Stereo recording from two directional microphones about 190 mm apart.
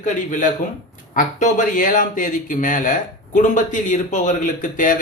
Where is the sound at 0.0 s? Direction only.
45° left (ahead or behind).